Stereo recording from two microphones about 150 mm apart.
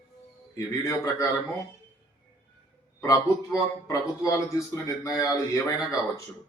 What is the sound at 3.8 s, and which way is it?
Speech, 20° left (ahead or behind).